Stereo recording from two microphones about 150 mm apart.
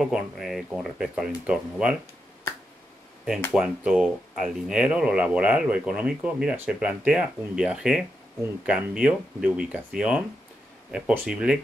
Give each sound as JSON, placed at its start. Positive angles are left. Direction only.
{"t": 0.0, "sound": "speech", "side_deg": 0}
{"t": 3.5, "sound": "speech", "side_deg": -5}